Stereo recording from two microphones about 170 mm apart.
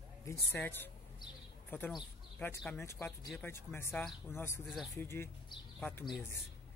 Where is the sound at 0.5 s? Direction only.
10° left (ahead or behind).